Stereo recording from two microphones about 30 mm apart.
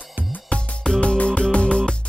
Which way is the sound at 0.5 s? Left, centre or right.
Left.